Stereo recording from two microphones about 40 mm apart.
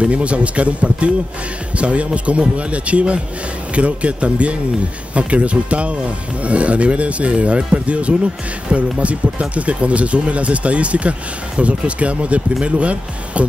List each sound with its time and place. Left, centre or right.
0.0 s speech: right